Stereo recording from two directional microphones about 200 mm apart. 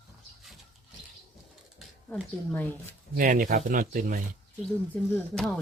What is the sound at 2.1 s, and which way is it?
Speech, 5° left (ahead or behind).